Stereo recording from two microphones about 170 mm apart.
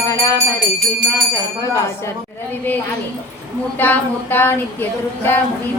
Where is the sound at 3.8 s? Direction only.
10° left (ahead or behind).